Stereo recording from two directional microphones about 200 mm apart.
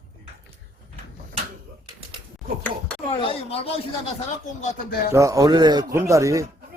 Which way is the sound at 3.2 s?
30° left (ahead or behind).